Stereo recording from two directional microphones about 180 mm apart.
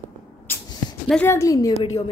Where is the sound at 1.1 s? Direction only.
10° left (ahead or behind).